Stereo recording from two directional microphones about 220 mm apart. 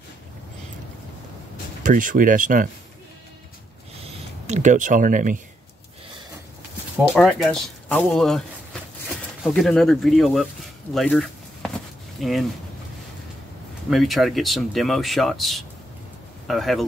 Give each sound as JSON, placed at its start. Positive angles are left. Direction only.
{"t": 1.8, "sound": "speech", "side_deg": -35}
{"t": 4.0, "sound": "a sound", "side_deg": -30}
{"t": 7.2, "sound": "speech", "side_deg": 0}
{"t": 9.4, "sound": "speech", "side_deg": 5}
{"t": 13.8, "sound": "speech", "side_deg": 0}